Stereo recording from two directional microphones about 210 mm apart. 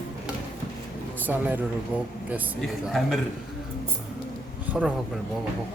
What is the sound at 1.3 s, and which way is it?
Speech, 10° right (ahead or behind).